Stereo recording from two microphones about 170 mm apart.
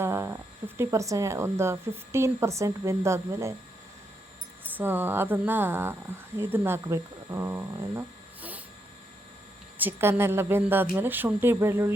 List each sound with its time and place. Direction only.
0.0 s a sound: 15° right (ahead or behind)
0.8 s a woman's voice: 20° right (ahead or behind)
4.8 s a woman's voice: 10° right (ahead or behind)
9.7 s a woman's voice: 10° right (ahead or behind)